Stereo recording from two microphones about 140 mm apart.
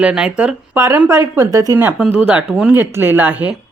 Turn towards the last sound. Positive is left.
turn(degrees=-10)  # may be behind; listen again after turning